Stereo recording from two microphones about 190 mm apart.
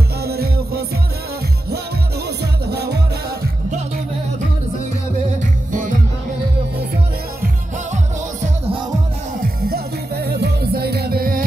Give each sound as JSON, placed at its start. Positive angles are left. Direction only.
{"t": 0.2, "sound": "music", "side_deg": -55}
{"t": 2.2, "sound": "music", "side_deg": -60}
{"t": 5.7, "sound": "music", "side_deg": -45}
{"t": 7.4, "sound": "music", "side_deg": -40}
{"t": 9.4, "sound": "music", "side_deg": -55}